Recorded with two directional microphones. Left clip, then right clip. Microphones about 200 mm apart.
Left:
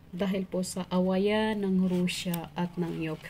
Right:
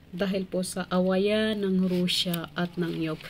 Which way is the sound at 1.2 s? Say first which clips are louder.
Right 2 dB; 15° right (ahead or behind).